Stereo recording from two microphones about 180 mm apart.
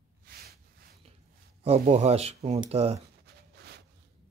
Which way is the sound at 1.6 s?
35° right (ahead or behind).